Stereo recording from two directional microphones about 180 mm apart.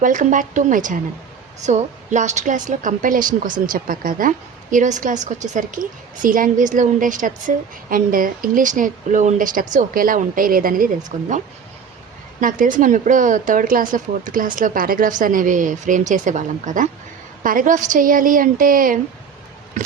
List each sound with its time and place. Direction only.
0.0 s a woman's voice: 45° right (ahead or behind)